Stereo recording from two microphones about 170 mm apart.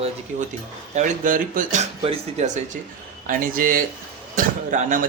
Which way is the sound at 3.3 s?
55° right (ahead or behind).